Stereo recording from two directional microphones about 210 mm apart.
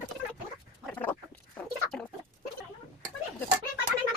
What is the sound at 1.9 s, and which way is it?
Chicken, 5° left (ahead or behind).